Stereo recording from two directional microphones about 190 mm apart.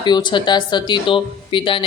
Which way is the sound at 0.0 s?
25° left (ahead or behind).